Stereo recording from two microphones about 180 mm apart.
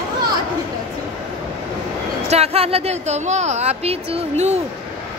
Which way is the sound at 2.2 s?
35° right (ahead or behind).